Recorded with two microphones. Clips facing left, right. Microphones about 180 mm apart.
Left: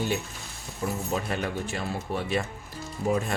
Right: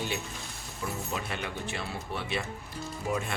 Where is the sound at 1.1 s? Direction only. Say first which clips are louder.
Left 6 dB; 40° left (ahead or behind).